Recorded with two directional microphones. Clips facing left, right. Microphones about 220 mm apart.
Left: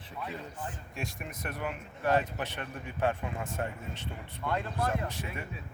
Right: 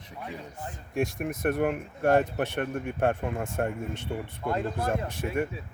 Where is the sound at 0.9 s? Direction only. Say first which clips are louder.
Right 15 dB; 55° right (ahead or behind).